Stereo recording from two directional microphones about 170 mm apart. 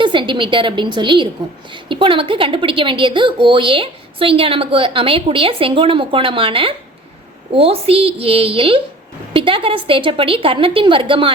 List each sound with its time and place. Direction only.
0.0 s a woman's voice: 30° right (ahead or behind)